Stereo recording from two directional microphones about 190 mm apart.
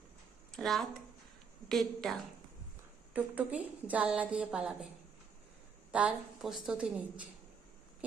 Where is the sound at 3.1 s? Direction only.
5° right (ahead or behind).